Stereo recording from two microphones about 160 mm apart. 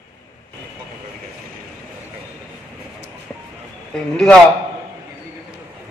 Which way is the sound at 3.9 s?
5° left (ahead or behind).